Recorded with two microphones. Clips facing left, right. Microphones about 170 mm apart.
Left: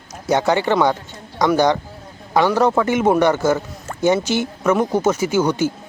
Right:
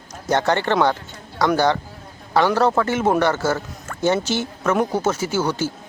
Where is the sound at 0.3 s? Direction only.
10° left (ahead or behind).